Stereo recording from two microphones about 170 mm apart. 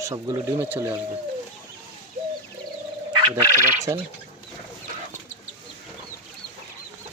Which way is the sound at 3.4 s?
20° right (ahead or behind).